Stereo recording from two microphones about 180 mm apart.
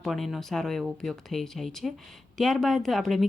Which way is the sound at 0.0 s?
Centre (ahead or behind).